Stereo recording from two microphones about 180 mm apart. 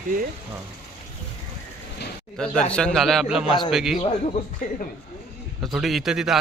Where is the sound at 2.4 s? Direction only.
5° left (ahead or behind).